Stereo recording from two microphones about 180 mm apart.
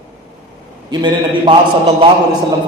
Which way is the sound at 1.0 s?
30° right (ahead or behind).